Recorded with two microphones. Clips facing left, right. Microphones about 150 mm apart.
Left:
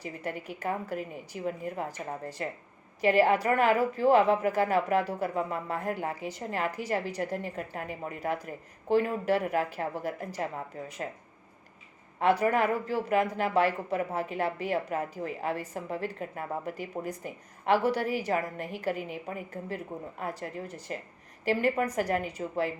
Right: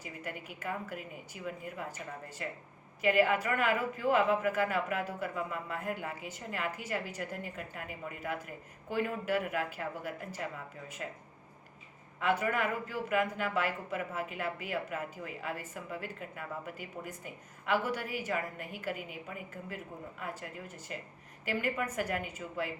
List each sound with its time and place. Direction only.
0.0 s speech: 35° left (ahead or behind)
12.2 s speech: 35° left (ahead or behind)